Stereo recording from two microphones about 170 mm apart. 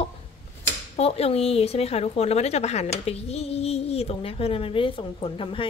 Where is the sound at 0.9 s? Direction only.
35° left (ahead or behind).